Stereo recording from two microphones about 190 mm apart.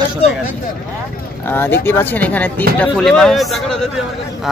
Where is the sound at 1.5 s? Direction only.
10° left (ahead or behind).